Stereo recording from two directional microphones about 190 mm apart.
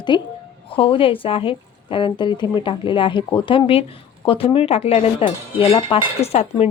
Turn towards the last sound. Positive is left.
turn(degrees=35)  # may be behind; listen again after turning